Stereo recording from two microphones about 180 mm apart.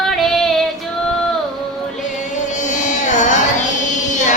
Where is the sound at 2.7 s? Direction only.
45° left (ahead or behind).